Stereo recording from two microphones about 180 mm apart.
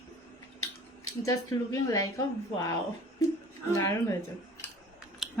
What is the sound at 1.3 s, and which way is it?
Speech, 20° left (ahead or behind).